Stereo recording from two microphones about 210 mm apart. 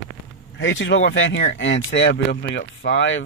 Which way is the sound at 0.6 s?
60° left (ahead or behind).